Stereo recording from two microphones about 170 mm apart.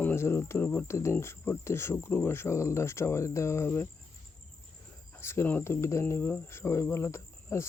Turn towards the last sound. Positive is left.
turn(degrees=15)  # may be behind; listen again after turning